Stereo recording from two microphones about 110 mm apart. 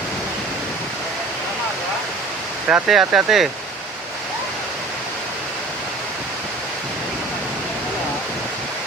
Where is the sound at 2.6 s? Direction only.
10° right (ahead or behind).